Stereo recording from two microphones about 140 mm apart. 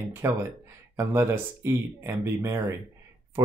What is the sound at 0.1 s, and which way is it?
Speech, 20° right (ahead or behind).